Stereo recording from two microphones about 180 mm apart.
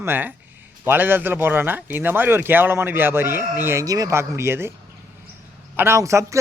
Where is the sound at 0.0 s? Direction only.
10° right (ahead or behind).